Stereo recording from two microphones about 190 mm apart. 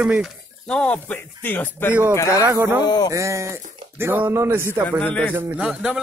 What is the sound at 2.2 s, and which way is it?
Speech, 15° left (ahead or behind).